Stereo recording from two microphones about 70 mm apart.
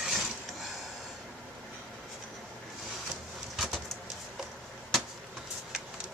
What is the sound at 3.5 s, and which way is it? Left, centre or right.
Vehicle, centre.